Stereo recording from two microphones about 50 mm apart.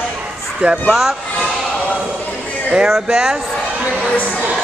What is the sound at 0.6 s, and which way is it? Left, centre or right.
Speech, right.